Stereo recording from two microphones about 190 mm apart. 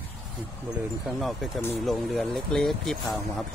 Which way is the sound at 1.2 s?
Centre (ahead or behind).